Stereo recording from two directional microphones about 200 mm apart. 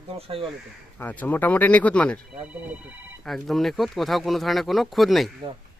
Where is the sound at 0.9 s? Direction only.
5° left (ahead or behind).